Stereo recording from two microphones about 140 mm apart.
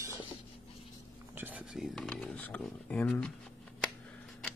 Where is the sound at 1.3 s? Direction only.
15° right (ahead or behind).